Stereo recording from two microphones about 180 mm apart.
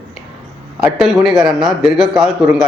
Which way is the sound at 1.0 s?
Centre (ahead or behind).